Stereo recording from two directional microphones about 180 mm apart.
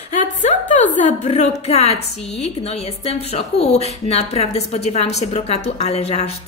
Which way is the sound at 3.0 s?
35° left (ahead or behind).